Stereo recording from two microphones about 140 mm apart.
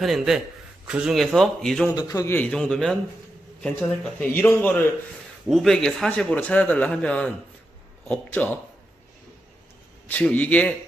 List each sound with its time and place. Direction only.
0.0 s speech: centre (ahead or behind)
2.0 s a man's voice: 25° left (ahead or behind)
2.3 s a man's voice: 5° left (ahead or behind)
5.5 s a man's voice: centre (ahead or behind)
10.0 s a man's voice: 10° left (ahead or behind)